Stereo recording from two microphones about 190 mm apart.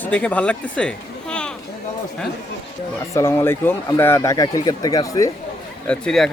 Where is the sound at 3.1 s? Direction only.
15° left (ahead or behind).